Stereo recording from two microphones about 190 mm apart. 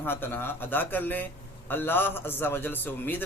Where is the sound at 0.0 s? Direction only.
10° left (ahead or behind).